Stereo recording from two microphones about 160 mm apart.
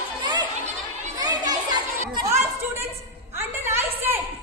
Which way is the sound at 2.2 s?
15° right (ahead or behind).